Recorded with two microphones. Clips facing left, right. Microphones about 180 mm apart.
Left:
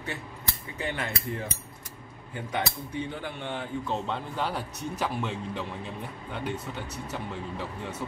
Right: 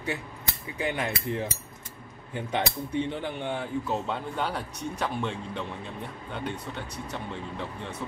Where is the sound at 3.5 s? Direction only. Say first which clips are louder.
Right 1 dB; 5° right (ahead or behind).